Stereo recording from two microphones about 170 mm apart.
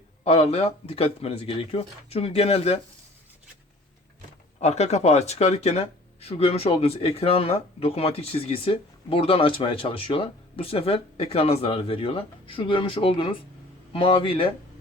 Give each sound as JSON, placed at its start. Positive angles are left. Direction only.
{"t": 0.3, "sound": "speech", "side_deg": 40}
{"t": 4.6, "sound": "speech", "side_deg": 40}